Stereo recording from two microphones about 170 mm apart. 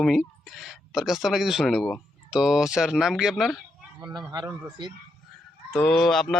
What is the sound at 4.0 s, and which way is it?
Speech, 25° right (ahead or behind).